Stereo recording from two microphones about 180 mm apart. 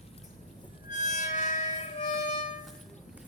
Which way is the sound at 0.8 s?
40° left (ahead or behind).